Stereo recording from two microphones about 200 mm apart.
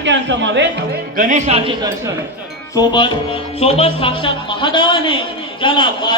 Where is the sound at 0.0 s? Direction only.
65° right (ahead or behind).